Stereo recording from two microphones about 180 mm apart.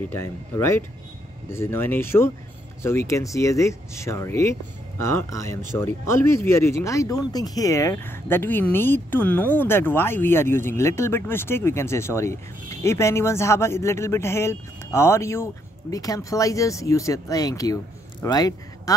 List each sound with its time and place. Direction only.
0.1 s speech: 15° left (ahead or behind)